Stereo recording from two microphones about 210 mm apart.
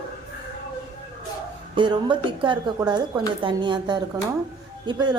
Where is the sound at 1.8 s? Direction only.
20° right (ahead or behind).